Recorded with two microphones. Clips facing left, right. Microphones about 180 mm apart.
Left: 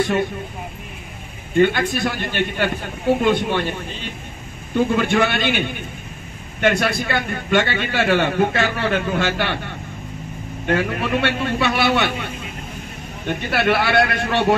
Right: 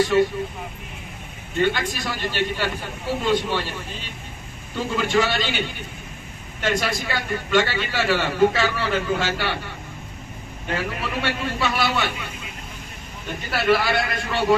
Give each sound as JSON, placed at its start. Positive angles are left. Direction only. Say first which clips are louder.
{"t": 1.6, "sound": "a man's voice", "louder": "left 6 dB", "side_deg": 55}
{"t": 4.7, "sound": "a man's voice", "louder": "left 4 dB", "side_deg": 55}
{"t": 13.3, "sound": "speech", "louder": "left 1 dB", "side_deg": 70}